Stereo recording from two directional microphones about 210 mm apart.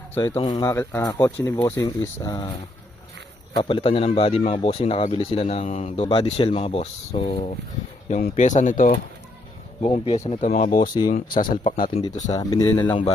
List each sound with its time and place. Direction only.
0.1 s speech: 10° left (ahead or behind)
3.5 s a man's voice: 25° left (ahead or behind)
9.8 s speech: 25° left (ahead or behind)
12.4 s speech: 15° left (ahead or behind)